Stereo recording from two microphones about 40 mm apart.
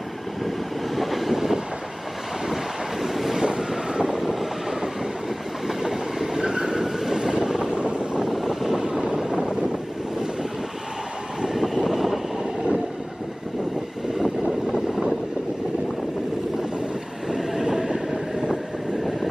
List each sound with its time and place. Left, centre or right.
0.9 s vehicle: centre
2.5 s wind noise: centre
3.3 s wind noise: centre
4.2 s train: centre
8.3 s vehicle: centre
8.8 s wind noise: right
11.4 s vehicle: centre
14.4 s vehicle: centre
17.3 s train: centre